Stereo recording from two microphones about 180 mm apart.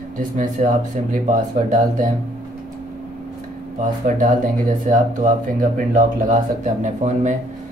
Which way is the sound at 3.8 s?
45° right (ahead or behind).